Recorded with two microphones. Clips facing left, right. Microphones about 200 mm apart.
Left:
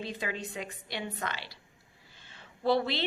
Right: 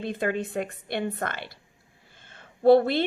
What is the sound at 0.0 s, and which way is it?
A woman's voice, 55° right (ahead or behind).